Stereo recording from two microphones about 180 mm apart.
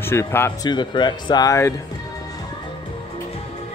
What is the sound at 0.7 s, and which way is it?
Speech, 25° left (ahead or behind).